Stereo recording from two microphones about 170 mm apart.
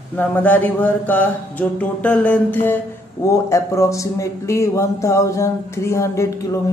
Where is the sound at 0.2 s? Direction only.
10° left (ahead or behind).